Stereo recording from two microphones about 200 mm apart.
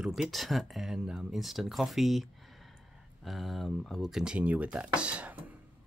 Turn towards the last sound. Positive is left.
turn(degrees=-10)  # may be behind; listen again after turning